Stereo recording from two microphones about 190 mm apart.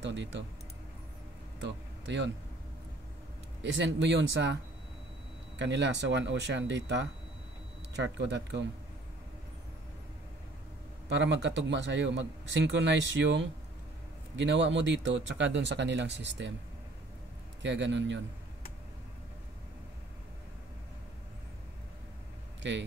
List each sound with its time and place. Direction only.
0.0 s a man's voice: 70° right (ahead or behind)
1.6 s speech: 70° right (ahead or behind)
3.6 s a man's voice: 75° right (ahead or behind)
5.6 s a man's voice: 65° right (ahead or behind)
11.1 s a man's voice: 65° right (ahead or behind)
17.6 s a man's voice: 70° right (ahead or behind)
22.6 s speech: 70° right (ahead or behind)